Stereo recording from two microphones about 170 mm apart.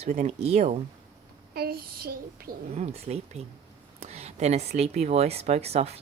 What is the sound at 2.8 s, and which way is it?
Speech, 40° right (ahead or behind).